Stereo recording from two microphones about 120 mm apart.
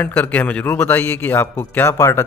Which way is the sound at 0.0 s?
15° left (ahead or behind).